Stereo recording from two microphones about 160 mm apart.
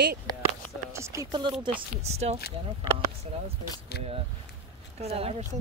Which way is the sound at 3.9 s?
75° left (ahead or behind).